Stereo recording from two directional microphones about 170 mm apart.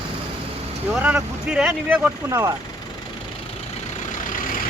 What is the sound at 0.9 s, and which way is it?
Speech, 10° right (ahead or behind).